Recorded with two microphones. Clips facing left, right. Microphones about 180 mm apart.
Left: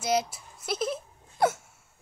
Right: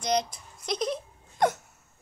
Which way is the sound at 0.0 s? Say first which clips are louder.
Even; 5° left (ahead or behind).